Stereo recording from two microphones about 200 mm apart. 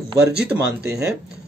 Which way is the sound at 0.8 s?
55° right (ahead or behind).